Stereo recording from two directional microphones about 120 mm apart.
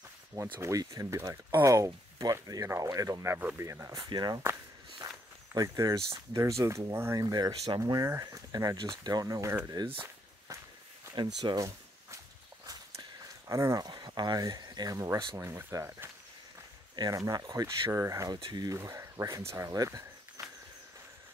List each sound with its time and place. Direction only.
0.3 s speech: 25° right (ahead or behind)
4.1 s speech: 35° right (ahead or behind)
5.0 s walk: 30° right (ahead or behind)
5.5 s speech: 30° right (ahead or behind)
11.1 s speech: 40° right (ahead or behind)
13.5 s speech: 25° right (ahead or behind)
18.8 s speech: 25° right (ahead or behind)
20.4 s a sound: 30° right (ahead or behind)